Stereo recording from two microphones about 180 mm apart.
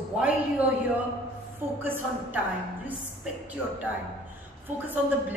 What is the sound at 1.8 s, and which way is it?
Speech, 10° right (ahead or behind).